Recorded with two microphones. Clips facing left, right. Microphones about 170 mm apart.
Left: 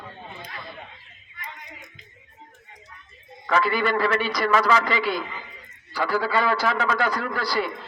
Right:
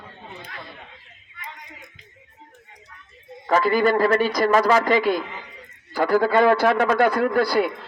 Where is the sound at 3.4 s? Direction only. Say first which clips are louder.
Right 4 dB; 40° right (ahead or behind).